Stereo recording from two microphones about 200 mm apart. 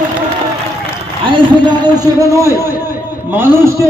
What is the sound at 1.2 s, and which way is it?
A man's voice, 25° right (ahead or behind).